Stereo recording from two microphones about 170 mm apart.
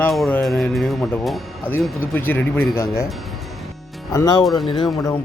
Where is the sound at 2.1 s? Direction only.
10° left (ahead or behind).